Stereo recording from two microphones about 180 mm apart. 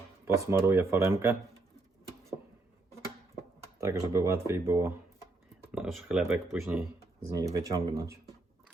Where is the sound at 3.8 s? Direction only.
15° right (ahead or behind).